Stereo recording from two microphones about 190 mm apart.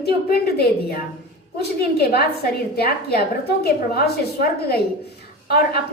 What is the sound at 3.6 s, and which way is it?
A woman's voice, 55° left (ahead or behind).